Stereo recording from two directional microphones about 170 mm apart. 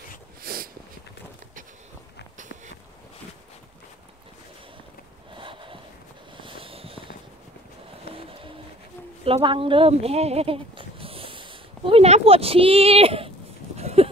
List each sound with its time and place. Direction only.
0.4 s a sound: 60° right (ahead or behind)
5.3 s snort: 30° right (ahead or behind)
6.3 s fireworks: 30° right (ahead or behind)
8.1 s music: 35° right (ahead or behind)
9.2 s speech: 30° right (ahead or behind)
13.7 s a sound: 40° right (ahead or behind)